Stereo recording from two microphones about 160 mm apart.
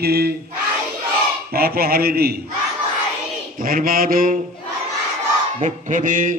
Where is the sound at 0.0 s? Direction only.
80° right.